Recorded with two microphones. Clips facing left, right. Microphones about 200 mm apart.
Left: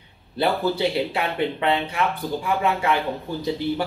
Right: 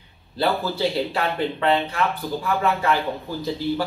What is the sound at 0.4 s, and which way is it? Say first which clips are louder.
A man's voice: left 1 dB; 20° left (ahead or behind).